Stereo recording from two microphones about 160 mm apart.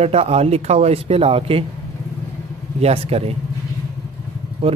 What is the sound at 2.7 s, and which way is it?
Speech, 40° right (ahead or behind).